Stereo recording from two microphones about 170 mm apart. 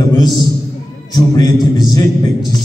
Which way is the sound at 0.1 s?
25° left (ahead or behind).